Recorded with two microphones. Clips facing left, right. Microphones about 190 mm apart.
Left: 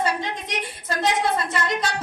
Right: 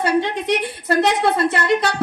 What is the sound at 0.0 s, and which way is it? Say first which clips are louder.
A woman's voice: right 7 dB; 65° right (ahead or behind).